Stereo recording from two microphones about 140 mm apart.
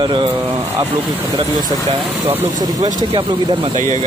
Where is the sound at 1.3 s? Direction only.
30° right (ahead or behind).